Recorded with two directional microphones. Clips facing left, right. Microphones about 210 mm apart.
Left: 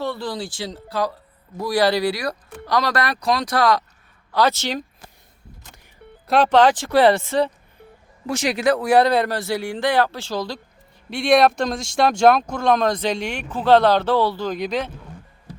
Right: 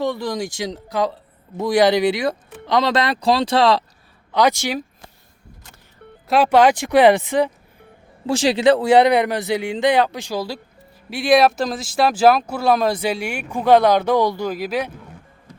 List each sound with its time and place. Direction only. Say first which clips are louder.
0.0 s speech: right 4 dB; 15° right (ahead or behind)
4.3 s speech: right 2 dB; 15° right (ahead or behind)
6.2 s speech: right 1 dB; 5° right (ahead or behind)
8.3 s speech: right 4 dB; 30° right (ahead or behind); by 14.9 s 10° right (ahead or behind)